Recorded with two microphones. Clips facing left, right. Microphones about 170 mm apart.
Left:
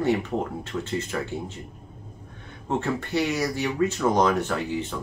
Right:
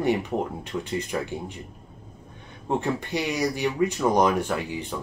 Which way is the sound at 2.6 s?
15° right (ahead or behind).